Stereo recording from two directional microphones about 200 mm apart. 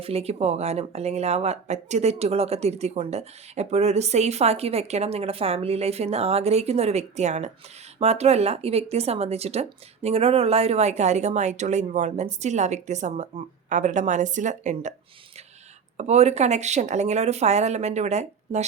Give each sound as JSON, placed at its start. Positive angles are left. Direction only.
{"t": 0.0, "sound": "speech", "side_deg": -30}
{"t": 16.0, "sound": "speech", "side_deg": -35}